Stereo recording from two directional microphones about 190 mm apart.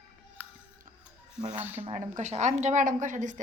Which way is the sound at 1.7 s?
35° right (ahead or behind).